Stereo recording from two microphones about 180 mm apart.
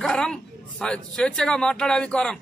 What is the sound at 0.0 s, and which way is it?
Speech, 5° left (ahead or behind).